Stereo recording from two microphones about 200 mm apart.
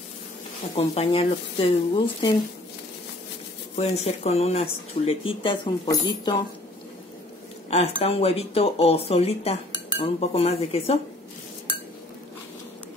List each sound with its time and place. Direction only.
0.7 s speech: 30° left (ahead or behind)
3.7 s speech: 35° left (ahead or behind)
7.7 s speech: 30° left (ahead or behind)